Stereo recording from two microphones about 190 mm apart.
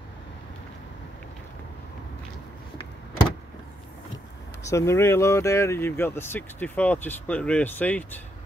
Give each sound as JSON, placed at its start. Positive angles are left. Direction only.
{"t": 4.6, "sound": "speech", "side_deg": 15}